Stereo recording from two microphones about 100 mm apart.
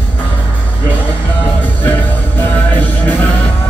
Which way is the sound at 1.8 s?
20° left (ahead or behind).